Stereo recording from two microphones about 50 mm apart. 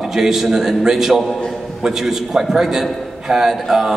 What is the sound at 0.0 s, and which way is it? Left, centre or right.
A man's voice, centre.